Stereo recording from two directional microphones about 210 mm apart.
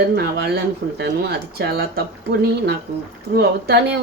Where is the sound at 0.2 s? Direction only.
50° right (ahead or behind).